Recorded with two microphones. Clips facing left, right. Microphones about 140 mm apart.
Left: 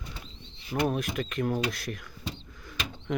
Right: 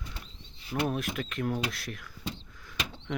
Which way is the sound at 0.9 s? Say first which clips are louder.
Left 2 dB; centre (ahead or behind).